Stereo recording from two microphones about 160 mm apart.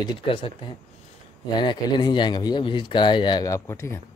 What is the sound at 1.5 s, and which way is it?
Speech, 30° left (ahead or behind).